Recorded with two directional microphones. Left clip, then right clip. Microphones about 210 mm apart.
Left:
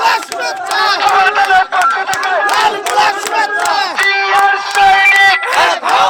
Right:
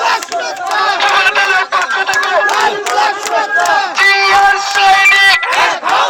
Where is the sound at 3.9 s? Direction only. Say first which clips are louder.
Right 4 dB; 55° right (ahead or behind).